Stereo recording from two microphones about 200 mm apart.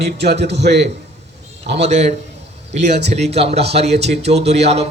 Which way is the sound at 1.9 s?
35° right (ahead or behind).